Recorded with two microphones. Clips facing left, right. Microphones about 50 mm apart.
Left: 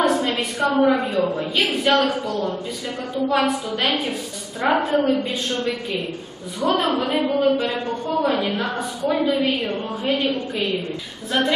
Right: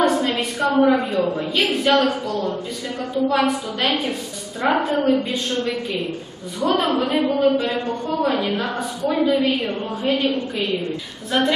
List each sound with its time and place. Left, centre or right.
0.0 s a woman's voice: centre
7.5 s speech: left
8.1 s a woman's voice: centre
11.3 s a woman's voice: centre